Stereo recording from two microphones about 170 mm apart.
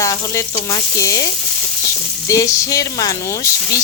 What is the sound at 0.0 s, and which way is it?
Speech, 20° left (ahead or behind).